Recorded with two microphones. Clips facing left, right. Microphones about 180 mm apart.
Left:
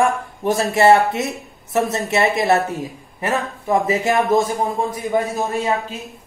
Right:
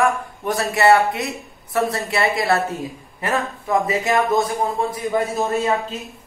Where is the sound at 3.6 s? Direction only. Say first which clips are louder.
Left 2 dB; 25° left (ahead or behind).